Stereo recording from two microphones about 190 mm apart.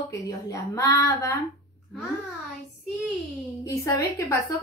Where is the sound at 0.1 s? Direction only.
15° left (ahead or behind).